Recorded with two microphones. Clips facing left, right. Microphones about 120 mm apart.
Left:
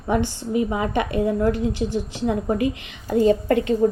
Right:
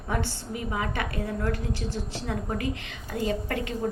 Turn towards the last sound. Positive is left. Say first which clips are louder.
# left 11 dB
turn(degrees=25)  # may be behind; listen again after turning